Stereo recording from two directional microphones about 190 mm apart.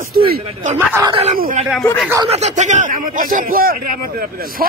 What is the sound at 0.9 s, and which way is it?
Speech, 15° right (ahead or behind).